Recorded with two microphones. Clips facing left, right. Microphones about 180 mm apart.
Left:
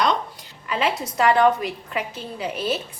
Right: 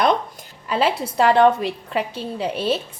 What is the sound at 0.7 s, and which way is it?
A woman's voice, 35° right (ahead or behind).